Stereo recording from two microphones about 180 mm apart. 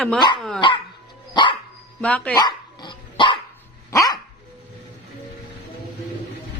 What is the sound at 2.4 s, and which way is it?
Dog, 25° left (ahead or behind).